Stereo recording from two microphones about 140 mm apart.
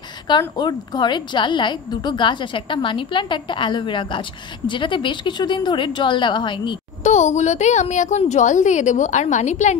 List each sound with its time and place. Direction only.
0.6 s a woman's voice: 30° left (ahead or behind)
7.0 s a woman's voice: 55° left (ahead or behind)